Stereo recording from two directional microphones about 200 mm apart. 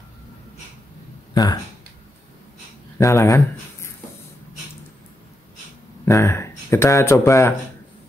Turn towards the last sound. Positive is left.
turn(degrees=15)  # may be behind; listen again after turning